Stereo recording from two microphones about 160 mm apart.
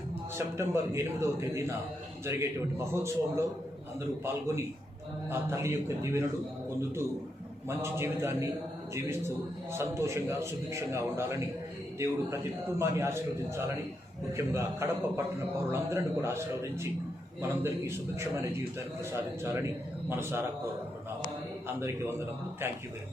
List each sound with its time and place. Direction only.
0.3 s a man's voice: 15° right (ahead or behind)
7.8 s a man's voice: 15° right (ahead or behind)
9.7 s a man's voice: 15° right (ahead or behind)
12.8 s a man's voice: 15° right (ahead or behind)